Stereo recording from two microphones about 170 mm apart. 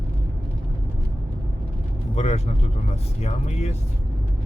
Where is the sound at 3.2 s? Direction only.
40° left (ahead or behind).